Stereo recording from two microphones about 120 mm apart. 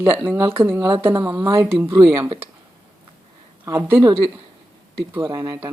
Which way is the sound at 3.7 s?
20° right (ahead or behind).